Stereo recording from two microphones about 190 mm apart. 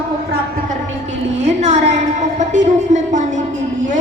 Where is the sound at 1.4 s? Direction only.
35° right (ahead or behind).